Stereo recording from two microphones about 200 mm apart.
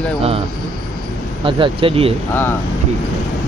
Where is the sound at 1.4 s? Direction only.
25° right (ahead or behind).